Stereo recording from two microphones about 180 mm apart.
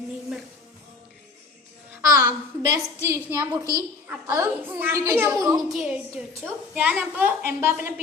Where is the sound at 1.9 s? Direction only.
15° right (ahead or behind).